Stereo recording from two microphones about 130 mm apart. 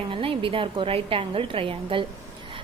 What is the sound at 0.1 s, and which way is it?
A woman's voice, 45° right (ahead or behind).